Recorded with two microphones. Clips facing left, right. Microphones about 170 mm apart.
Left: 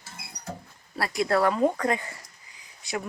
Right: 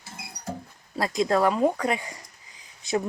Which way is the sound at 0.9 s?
20° right (ahead or behind).